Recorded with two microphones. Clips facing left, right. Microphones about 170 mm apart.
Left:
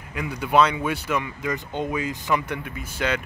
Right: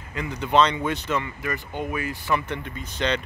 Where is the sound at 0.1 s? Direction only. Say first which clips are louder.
Left 1 dB; 10° left (ahead or behind).